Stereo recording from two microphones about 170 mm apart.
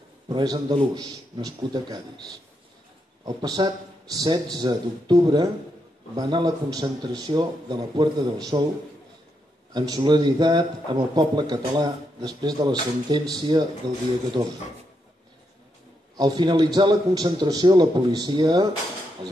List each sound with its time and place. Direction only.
0.3 s a man's voice: 25° right (ahead or behind)
3.3 s a man's voice: 25° right (ahead or behind)
9.8 s a man's voice: 25° right (ahead or behind)
16.2 s a man's voice: 25° right (ahead or behind)